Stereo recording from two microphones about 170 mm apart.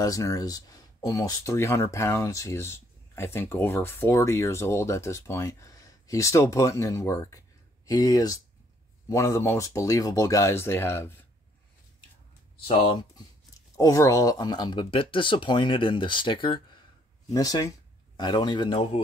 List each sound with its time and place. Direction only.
0.0 s speech: 20° left (ahead or behind)
12.6 s speech: 30° left (ahead or behind)